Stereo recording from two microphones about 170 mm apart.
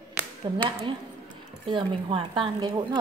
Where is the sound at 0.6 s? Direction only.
30° right (ahead or behind).